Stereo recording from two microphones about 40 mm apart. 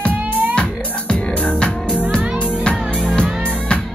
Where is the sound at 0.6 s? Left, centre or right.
Left.